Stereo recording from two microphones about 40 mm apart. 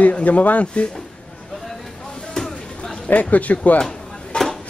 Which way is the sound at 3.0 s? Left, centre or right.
Left.